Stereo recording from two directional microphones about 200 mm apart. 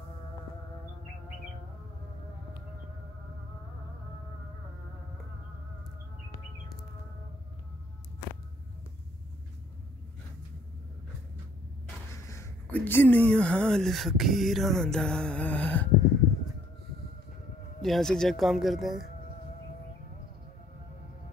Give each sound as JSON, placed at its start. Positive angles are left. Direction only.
{"t": 12.3, "sound": "speech", "side_deg": 10}
{"t": 17.8, "sound": "speech", "side_deg": 0}